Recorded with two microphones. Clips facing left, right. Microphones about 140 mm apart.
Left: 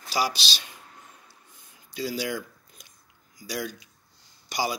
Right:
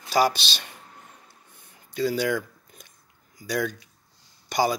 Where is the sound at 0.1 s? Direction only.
50° right (ahead or behind).